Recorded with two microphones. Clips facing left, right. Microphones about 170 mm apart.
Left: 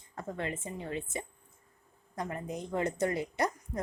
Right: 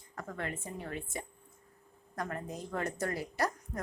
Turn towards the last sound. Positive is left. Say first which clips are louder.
# left 2 dB
turn(degrees=20)  # may be behind; listen again after turning